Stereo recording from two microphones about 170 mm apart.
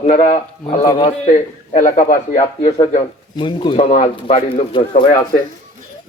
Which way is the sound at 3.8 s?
45° left (ahead or behind).